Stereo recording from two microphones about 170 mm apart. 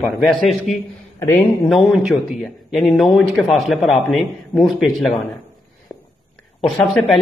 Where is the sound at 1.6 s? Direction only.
Centre (ahead or behind).